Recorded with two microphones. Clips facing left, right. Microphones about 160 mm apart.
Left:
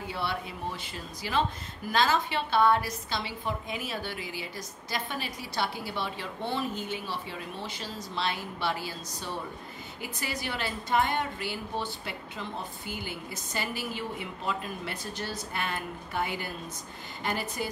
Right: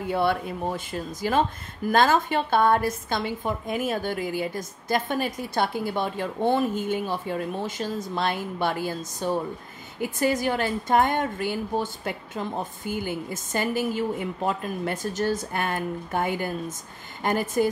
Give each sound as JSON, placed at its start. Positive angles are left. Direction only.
{"t": 0.1, "sound": "a woman's voice", "side_deg": -50}